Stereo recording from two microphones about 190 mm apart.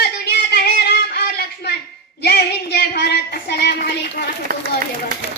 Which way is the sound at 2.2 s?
60° left (ahead or behind).